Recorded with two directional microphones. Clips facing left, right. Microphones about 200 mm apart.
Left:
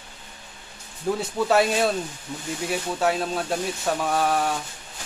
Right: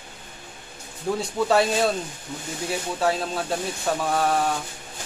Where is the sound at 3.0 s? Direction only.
Centre (ahead or behind).